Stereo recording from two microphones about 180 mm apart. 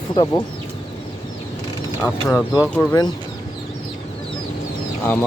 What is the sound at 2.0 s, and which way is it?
Speech, centre (ahead or behind).